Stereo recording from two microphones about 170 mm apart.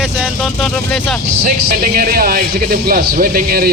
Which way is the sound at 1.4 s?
55° right (ahead or behind).